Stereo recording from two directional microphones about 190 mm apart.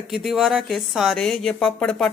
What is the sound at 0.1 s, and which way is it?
Speech, centre (ahead or behind).